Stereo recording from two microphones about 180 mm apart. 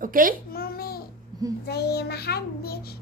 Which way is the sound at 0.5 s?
55° left (ahead or behind).